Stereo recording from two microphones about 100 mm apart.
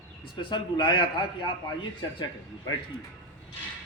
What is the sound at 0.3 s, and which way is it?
Speech, 50° left (ahead or behind).